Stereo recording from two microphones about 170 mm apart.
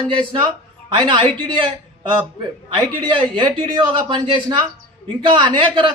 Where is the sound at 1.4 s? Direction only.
30° right (ahead or behind).